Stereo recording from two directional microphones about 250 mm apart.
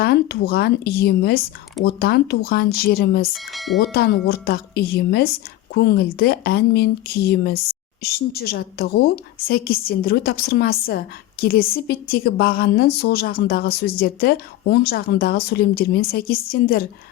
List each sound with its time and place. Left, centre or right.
0.0 s a woman's voice: left
3.3 s speech: centre
3.9 s a woman's voice: left